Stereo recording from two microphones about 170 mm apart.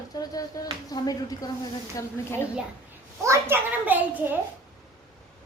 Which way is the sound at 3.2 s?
15° right (ahead or behind).